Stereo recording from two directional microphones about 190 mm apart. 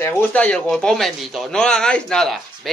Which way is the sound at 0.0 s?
10° left (ahead or behind).